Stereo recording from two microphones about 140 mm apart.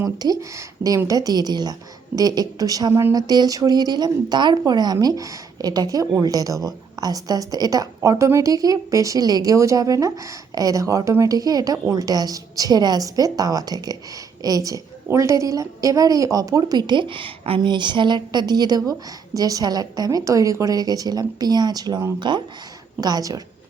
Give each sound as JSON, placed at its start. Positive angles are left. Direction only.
{"t": 0.0, "sound": "a woman's voice", "side_deg": -25}